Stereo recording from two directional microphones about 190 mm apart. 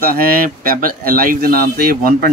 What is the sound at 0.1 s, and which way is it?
Speech, 50° right (ahead or behind).